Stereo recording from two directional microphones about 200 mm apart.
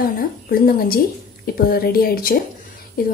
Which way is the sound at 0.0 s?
45° left (ahead or behind).